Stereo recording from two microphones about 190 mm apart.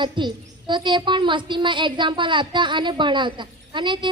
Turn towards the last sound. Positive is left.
turn(degrees=-25)  # may be behind; listen again after turning